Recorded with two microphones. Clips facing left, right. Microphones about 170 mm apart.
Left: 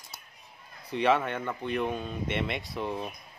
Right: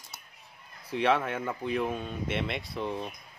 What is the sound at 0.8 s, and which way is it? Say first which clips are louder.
Speech: left 1 dB; centre (ahead or behind).